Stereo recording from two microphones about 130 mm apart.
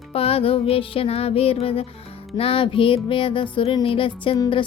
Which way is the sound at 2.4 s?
45° left (ahead or behind).